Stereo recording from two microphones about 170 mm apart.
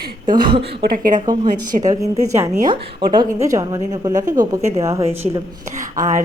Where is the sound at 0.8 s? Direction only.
60° right (ahead or behind).